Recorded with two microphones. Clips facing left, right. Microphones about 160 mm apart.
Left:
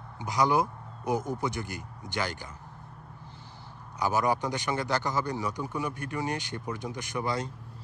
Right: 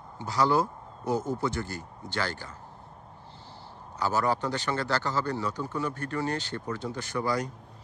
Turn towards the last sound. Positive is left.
turn(degrees=20)  # may be behind; listen again after turning